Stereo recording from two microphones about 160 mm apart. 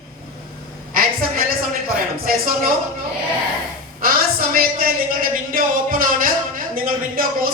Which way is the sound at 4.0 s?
65° right (ahead or behind).